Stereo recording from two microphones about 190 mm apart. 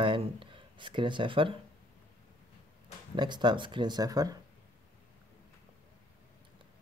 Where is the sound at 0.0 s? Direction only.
25° right (ahead or behind).